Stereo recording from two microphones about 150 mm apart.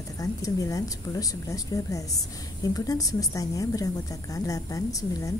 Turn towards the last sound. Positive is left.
turn(degrees=20)  # may be behind; listen again after turning